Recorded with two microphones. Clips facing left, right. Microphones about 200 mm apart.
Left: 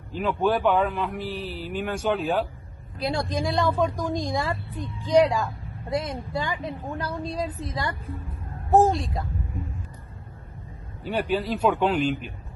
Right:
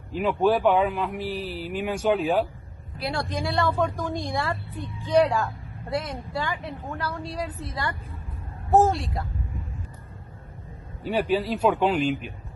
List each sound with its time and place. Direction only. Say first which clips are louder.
0.1 s a man's voice: right 2 dB; centre (ahead or behind)
3.0 s a woman's voice: left 2 dB; 15° left (ahead or behind)
11.1 s a man's voice: right 1 dB; centre (ahead or behind)